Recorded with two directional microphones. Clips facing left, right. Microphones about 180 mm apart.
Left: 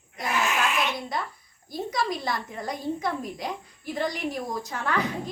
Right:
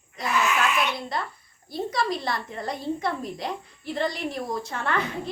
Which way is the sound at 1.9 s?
Centre (ahead or behind).